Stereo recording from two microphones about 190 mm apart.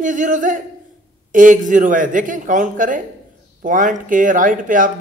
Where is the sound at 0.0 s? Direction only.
40° right (ahead or behind).